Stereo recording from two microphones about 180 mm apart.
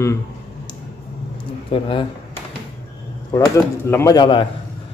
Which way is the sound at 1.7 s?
25° left (ahead or behind).